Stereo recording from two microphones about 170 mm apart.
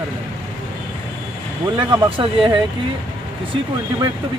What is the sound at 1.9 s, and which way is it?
Speech, 30° right (ahead or behind).